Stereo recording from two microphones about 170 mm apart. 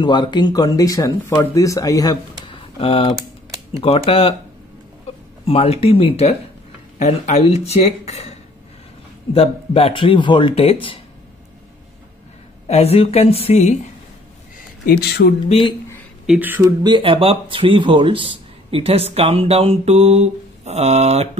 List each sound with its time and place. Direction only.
0.0 s speech: 25° left (ahead or behind)
2.6 s typing: 30° left (ahead or behind)
3.8 s speech: 35° left (ahead or behind)
5.4 s speech: 35° left (ahead or behind)
9.3 s speech: 35° left (ahead or behind)
12.6 s speech: 35° left (ahead or behind)
14.9 s speech: 70° left (ahead or behind)
15.4 s speech: 40° left (ahead or behind)
16.3 s speech: 10° right (ahead or behind)
16.8 s speech: 30° right (ahead or behind)